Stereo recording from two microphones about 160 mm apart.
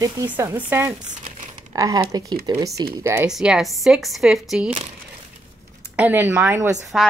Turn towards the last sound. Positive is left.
turn(degrees=-15)  # may be behind; listen again after turning